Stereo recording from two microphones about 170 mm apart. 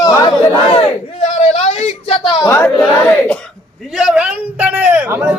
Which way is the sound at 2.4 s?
15° left (ahead or behind).